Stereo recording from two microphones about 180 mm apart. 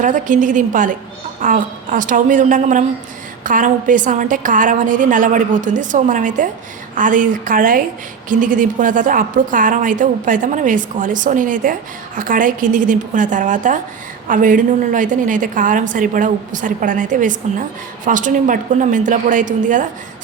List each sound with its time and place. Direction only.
0.0 s a woman's voice: 45° right (ahead or behind)